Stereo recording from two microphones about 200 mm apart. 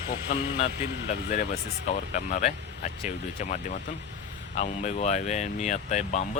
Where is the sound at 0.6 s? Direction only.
35° left (ahead or behind).